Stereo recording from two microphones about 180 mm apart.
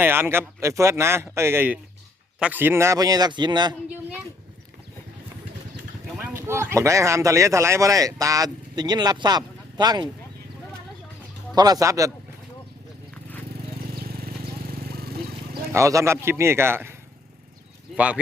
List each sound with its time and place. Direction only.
0.0 s a man's voice: 10° right (ahead or behind)
6.1 s speech: 10° right (ahead or behind)
11.5 s a man's voice: 20° right (ahead or behind)
13.5 s vehicle: 60° right (ahead or behind)
15.7 s speech: 15° right (ahead or behind)
17.9 s speech: 5° right (ahead or behind)